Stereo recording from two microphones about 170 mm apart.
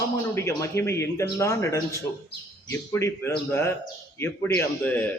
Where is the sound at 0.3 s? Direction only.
15° left (ahead or behind).